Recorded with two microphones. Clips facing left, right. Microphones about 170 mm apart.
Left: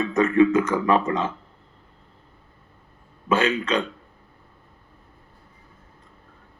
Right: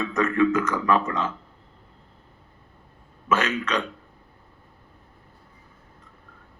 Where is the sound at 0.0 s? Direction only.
30° left (ahead or behind).